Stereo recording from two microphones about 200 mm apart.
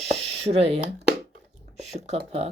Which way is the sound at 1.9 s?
30° right (ahead or behind).